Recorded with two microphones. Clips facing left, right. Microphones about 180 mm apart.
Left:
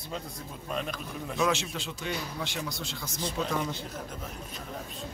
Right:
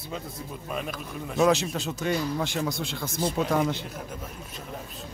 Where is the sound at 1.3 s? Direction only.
40° right (ahead or behind); by 3.8 s 75° right (ahead or behind).